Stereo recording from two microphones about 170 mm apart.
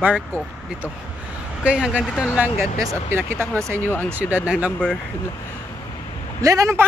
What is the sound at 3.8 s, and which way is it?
Speech, 10° left (ahead or behind).